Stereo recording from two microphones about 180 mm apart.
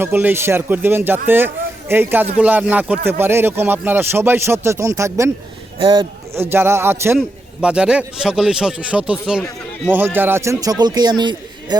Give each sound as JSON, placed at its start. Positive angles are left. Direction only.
{"t": 0.0, "sound": "a man's voice", "side_deg": -10}
{"t": 5.8, "sound": "speech", "side_deg": -25}
{"t": 6.3, "sound": "a man's voice", "side_deg": -10}